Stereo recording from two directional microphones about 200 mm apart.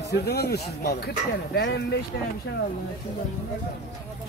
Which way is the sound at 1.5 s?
60° left (ahead or behind).